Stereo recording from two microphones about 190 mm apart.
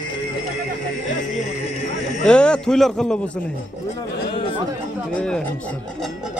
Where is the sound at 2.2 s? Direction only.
5° left (ahead or behind).